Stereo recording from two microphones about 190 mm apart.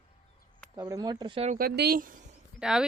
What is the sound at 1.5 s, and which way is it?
Speech, 50° right (ahead or behind).